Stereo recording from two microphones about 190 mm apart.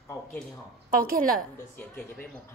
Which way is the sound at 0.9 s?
50° right (ahead or behind).